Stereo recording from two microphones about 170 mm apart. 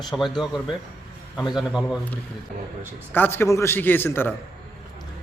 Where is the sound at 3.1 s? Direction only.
15° left (ahead or behind).